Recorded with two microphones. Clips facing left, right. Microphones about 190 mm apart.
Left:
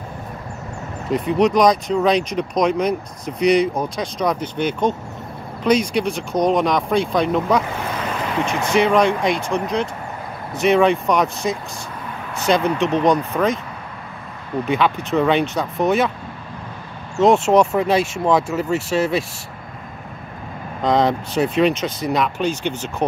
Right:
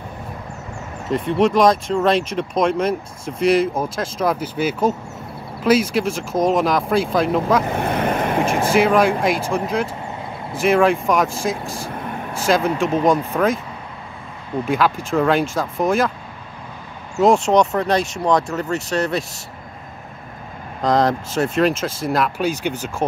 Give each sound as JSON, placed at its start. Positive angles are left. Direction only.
{"t": 1.1, "sound": "speech", "side_deg": 0}
{"t": 7.7, "sound": "boat", "side_deg": -55}
{"t": 8.7, "sound": "speech", "side_deg": -5}
{"t": 14.7, "sound": "speech", "side_deg": 0}
{"t": 17.2, "sound": "speech", "side_deg": 5}
{"t": 20.8, "sound": "speech", "side_deg": 0}